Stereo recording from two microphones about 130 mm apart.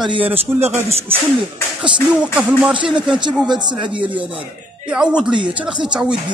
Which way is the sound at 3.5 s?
35° right (ahead or behind).